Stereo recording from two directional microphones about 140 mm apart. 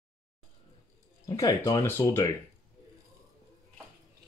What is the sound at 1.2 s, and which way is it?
Speech, 25° left (ahead or behind).